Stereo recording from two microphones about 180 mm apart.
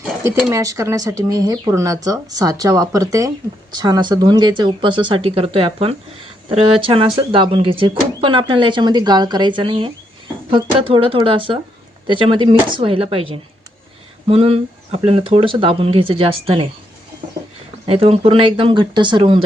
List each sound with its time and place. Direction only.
0.5 s speech: 20° right (ahead or behind)
17.8 s speech: 35° right (ahead or behind)